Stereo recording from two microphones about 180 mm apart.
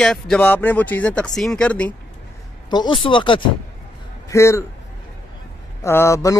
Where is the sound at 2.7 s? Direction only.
25° left (ahead or behind).